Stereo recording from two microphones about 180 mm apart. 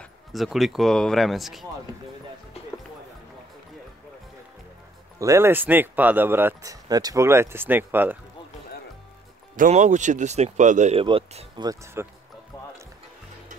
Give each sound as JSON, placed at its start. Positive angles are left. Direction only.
{"t": 0.0, "sound": "speech", "side_deg": 0}
{"t": 5.2, "sound": "speech", "side_deg": -15}
{"t": 9.6, "sound": "speech", "side_deg": -40}